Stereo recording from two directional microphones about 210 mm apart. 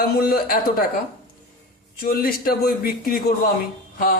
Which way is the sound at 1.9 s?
45° left (ahead or behind).